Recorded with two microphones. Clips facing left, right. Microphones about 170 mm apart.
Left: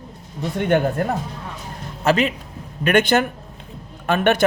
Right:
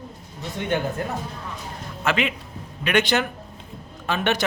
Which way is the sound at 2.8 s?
50° left (ahead or behind).